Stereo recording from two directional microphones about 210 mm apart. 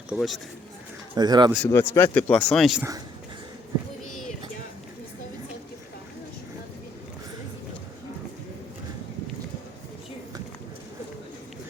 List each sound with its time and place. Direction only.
0.1 s speech: centre (ahead or behind)
1.1 s speech: 20° right (ahead or behind)
1.6 s speech: 10° left (ahead or behind)